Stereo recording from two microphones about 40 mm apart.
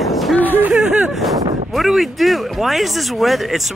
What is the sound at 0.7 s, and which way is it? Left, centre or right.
Speech, right.